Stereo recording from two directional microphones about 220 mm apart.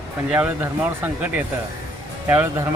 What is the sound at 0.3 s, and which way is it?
Speech, 10° right (ahead or behind).